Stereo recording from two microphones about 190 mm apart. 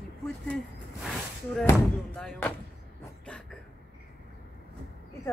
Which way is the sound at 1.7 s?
5° left (ahead or behind).